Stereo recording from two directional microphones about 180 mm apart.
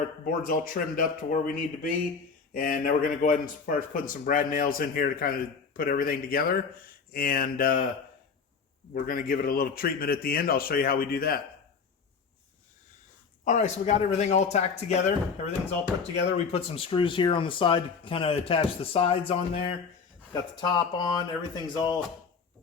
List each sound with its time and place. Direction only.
0.3 s a man's voice: 50° left (ahead or behind)
8.9 s a man's voice: 50° left (ahead or behind)
13.4 s speech: 40° left (ahead or behind)
16.5 s speech: 30° left (ahead or behind)